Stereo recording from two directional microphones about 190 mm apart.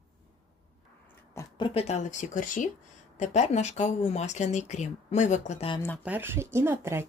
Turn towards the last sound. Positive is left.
turn(degrees=-15)  # may be behind; listen again after turning